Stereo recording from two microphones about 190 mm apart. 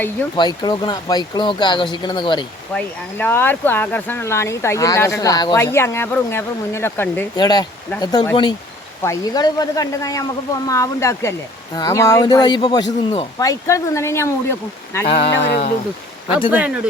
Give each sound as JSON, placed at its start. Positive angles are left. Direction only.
{"t": 0.3, "sound": "speech", "side_deg": 20}
{"t": 2.7, "sound": "speech", "side_deg": 10}
{"t": 15.0, "sound": "speech", "side_deg": 30}
{"t": 16.5, "sound": "speech", "side_deg": -5}